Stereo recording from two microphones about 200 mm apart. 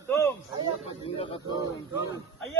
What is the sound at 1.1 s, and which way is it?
Speech, 25° left (ahead or behind).